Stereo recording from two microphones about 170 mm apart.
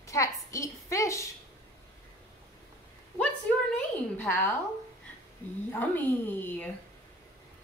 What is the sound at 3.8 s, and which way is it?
Speech, 10° left (ahead or behind).